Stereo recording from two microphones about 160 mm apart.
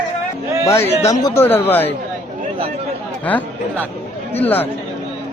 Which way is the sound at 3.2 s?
10° left (ahead or behind).